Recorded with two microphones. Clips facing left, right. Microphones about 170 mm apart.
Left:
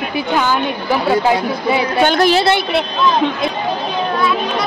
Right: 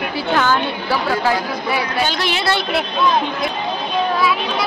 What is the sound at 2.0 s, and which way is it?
Speech, 50° left (ahead or behind).